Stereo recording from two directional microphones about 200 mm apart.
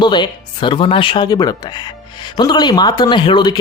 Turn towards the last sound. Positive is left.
turn(degrees=20)  # may be behind; listen again after turning